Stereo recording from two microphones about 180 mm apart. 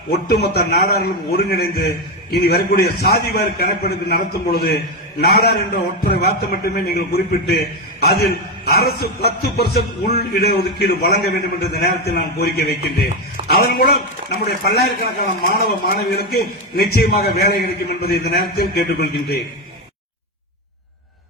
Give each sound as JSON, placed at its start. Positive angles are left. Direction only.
{"t": 0.3, "sound": "a man's voice", "side_deg": 65}